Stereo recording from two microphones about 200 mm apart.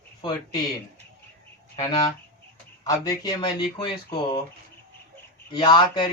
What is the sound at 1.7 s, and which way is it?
Speech, 25° left (ahead or behind).